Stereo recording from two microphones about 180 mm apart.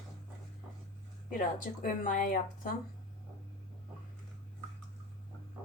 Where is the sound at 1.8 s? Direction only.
50° left (ahead or behind).